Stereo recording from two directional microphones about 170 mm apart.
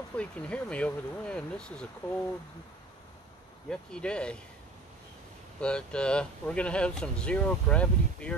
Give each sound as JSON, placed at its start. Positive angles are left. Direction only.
{"t": 0.1, "sound": "speech", "side_deg": 5}
{"t": 3.9, "sound": "speech", "side_deg": 5}
{"t": 5.6, "sound": "speech", "side_deg": 5}